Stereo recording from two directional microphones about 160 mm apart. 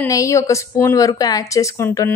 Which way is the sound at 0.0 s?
20° left (ahead or behind).